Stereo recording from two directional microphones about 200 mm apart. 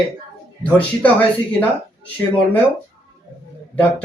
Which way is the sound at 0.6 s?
5° left (ahead or behind).